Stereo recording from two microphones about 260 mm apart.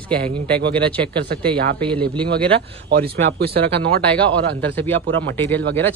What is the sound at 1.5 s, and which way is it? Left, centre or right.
Speech, right.